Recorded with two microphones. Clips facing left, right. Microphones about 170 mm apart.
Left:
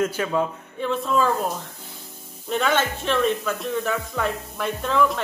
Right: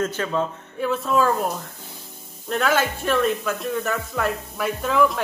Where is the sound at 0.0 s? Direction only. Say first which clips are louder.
Left 1 dB; 10° left (ahead or behind).